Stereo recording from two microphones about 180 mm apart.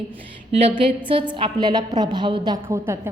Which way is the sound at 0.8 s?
30° right (ahead or behind).